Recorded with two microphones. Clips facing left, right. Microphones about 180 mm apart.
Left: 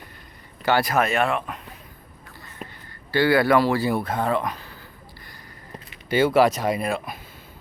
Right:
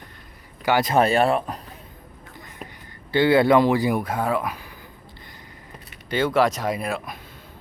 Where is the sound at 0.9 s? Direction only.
30° right (ahead or behind).